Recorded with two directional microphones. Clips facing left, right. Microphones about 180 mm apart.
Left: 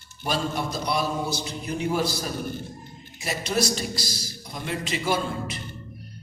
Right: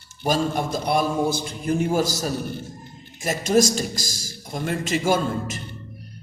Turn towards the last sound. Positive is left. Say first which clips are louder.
# right 4 dB
turn(degrees=-45)  # may be behind; listen again after turning